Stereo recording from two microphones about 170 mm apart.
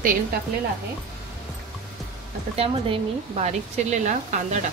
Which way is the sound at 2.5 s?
35° right (ahead or behind).